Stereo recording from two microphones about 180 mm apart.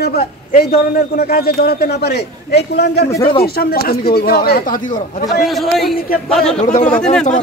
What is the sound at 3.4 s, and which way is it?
A man's voice, 60° left (ahead or behind).